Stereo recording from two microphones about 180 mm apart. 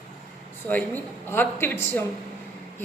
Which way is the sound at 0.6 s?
10° left (ahead or behind).